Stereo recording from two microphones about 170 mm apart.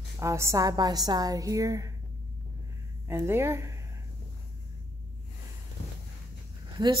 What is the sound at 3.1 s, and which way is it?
Speech, 15° right (ahead or behind).